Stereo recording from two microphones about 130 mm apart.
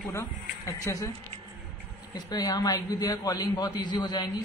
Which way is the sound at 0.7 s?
20° left (ahead or behind).